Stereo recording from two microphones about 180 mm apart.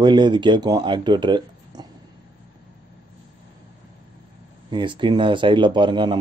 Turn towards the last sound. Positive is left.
turn(degrees=-25)  # may be behind; listen again after turning